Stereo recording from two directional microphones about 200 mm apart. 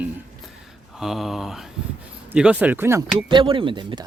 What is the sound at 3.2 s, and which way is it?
Speech, 25° right (ahead or behind).